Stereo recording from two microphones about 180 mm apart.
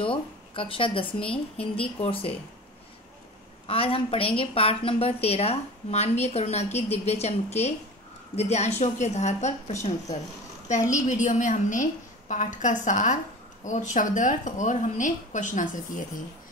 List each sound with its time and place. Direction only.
0.0 s a woman's voice: 30° left (ahead or behind)
3.6 s a woman's voice: 30° left (ahead or behind); by 16.0 s 45° left (ahead or behind)